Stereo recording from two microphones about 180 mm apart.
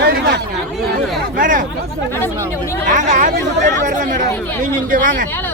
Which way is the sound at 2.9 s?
45° right (ahead or behind).